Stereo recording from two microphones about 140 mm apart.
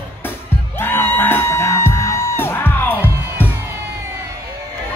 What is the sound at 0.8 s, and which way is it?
Music, 15° left (ahead or behind).